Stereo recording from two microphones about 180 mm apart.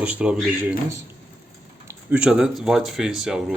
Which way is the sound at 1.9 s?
10° right (ahead or behind).